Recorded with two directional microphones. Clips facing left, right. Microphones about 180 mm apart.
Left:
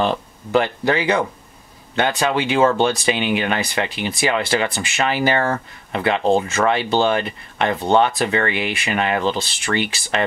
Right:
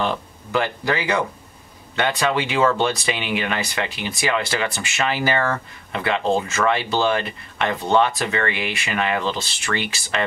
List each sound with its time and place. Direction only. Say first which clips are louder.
0.0 s speech: left 4 dB; 25° left (ahead or behind)